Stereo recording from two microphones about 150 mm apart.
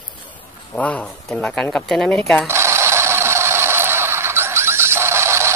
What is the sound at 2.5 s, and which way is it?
Mechanisms, 15° right (ahead or behind).